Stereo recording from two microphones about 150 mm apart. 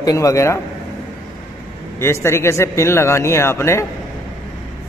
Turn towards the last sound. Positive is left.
turn(degrees=20)  # may be behind; listen again after turning